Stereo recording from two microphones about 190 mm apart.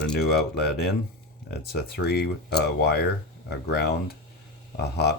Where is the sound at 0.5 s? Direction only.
60° left (ahead or behind).